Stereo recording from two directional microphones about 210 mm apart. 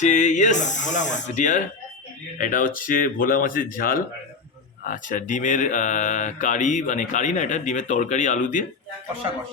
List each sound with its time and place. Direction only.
0.0 s speech: 35° left (ahead or behind)